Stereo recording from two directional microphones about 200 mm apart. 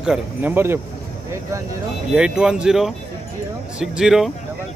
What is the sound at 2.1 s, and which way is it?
Speech, 5° right (ahead or behind).